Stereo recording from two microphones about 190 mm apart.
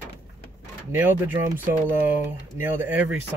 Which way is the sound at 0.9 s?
10° right (ahead or behind).